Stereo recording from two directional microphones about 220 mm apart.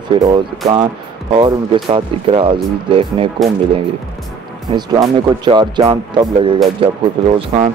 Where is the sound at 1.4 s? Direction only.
20° right (ahead or behind).